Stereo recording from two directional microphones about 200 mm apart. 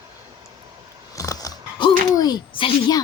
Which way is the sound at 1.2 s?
15° left (ahead or behind).